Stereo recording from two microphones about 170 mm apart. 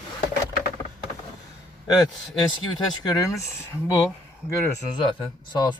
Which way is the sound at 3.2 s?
20° left (ahead or behind).